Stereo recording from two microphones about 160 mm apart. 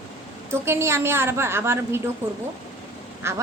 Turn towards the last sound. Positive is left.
turn(degrees=-15)  # may be behind; listen again after turning